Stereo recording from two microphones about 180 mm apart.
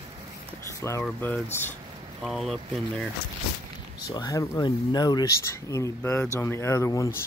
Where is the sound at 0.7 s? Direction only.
15° left (ahead or behind).